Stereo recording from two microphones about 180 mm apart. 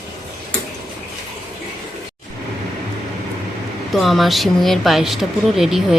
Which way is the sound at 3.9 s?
Centre (ahead or behind).